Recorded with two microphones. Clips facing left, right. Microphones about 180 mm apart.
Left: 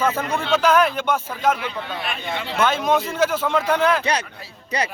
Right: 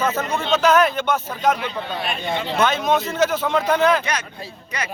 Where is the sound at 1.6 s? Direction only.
25° right (ahead or behind).